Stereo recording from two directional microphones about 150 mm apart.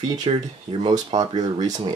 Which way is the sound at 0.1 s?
30° right (ahead or behind).